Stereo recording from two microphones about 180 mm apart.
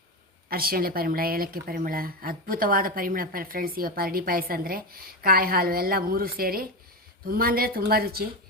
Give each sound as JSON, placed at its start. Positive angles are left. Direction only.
{"t": 0.5, "sound": "a woman's voice", "side_deg": -55}